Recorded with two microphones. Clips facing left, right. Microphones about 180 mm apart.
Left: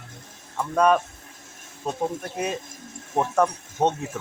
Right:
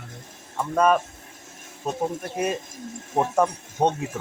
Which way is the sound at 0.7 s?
5° right (ahead or behind).